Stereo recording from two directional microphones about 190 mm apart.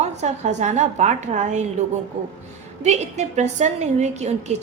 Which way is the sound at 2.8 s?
35° right (ahead or behind).